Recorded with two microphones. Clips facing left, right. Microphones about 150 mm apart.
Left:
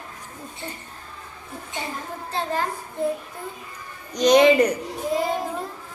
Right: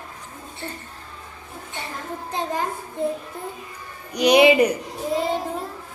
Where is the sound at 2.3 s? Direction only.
15° right (ahead or behind).